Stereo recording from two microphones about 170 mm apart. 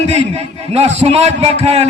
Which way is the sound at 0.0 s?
40° right (ahead or behind).